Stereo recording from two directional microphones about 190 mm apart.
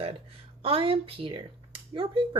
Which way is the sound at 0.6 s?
30° right (ahead or behind).